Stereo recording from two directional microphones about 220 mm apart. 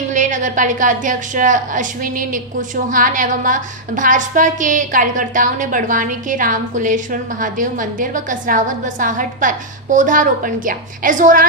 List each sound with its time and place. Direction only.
0.1 s a woman's voice: 35° right (ahead or behind)